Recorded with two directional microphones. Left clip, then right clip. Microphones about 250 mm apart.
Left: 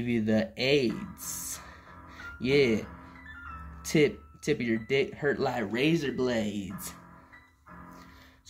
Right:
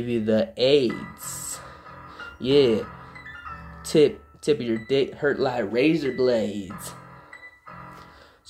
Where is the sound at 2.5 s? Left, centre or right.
Left.